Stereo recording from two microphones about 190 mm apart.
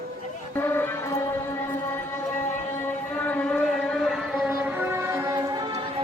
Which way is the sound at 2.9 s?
10° left (ahead or behind).